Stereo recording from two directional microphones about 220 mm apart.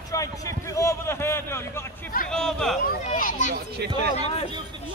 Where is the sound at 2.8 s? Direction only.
35° left (ahead or behind).